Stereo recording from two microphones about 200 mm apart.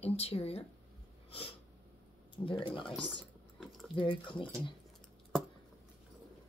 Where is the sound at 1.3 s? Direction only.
30° left (ahead or behind).